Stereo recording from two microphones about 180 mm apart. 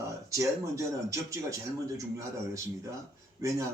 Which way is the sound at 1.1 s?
15° right (ahead or behind).